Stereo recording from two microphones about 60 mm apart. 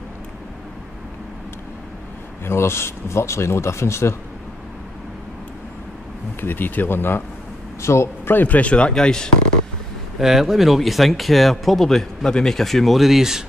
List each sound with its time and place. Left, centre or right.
2.4 s speech: left
6.4 s speech: left
7.8 s speech: left
8.4 s speech: left
10.1 s speech: centre